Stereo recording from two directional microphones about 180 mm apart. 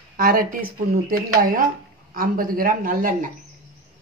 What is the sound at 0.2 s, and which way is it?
Speech, 50° right (ahead or behind).